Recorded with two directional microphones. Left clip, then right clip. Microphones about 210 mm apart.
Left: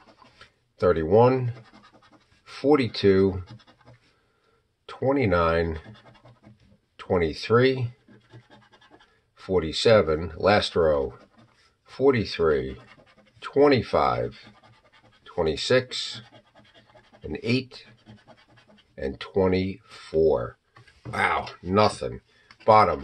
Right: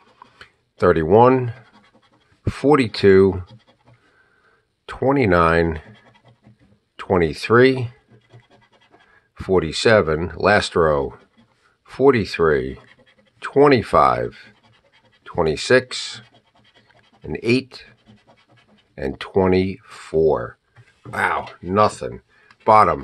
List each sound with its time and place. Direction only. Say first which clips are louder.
0.2 s a sound: right 8 dB; 45° right (ahead or behind)
0.7 s speech: right 6 dB; 45° right (ahead or behind)
4.8 s speech: right 6 dB; 45° right (ahead or behind)
7.0 s speech: right 6 dB; 45° right (ahead or behind)
9.3 s speech: right 6 dB; 45° right (ahead or behind)
17.3 s speech: right 7 dB; 40° right (ahead or behind)
18.9 s speech: right 5 dB; 45° right (ahead or behind)
21.1 s speech: right 3 dB; 20° right (ahead or behind)
22.6 s speech: right 4 dB; 40° right (ahead or behind)